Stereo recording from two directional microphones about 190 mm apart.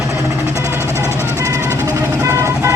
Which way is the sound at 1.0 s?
15° left (ahead or behind).